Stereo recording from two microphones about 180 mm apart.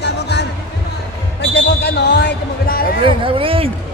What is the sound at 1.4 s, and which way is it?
Basketball bounce, 70° left (ahead or behind).